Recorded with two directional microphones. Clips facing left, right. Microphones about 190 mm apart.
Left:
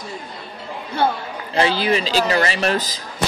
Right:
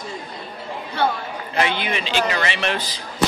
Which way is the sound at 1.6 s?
35° left (ahead or behind).